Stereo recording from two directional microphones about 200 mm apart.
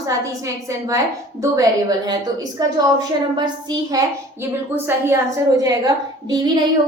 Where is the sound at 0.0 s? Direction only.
15° right (ahead or behind).